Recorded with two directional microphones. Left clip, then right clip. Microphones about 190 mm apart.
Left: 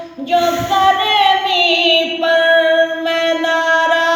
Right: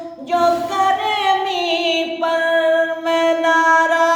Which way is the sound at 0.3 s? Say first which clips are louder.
Left 2 dB; 10° right (ahead or behind).